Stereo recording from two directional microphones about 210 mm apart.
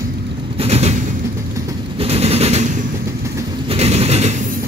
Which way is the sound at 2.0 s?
30° right (ahead or behind).